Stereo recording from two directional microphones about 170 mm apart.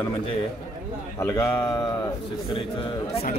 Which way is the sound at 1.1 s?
20° left (ahead or behind).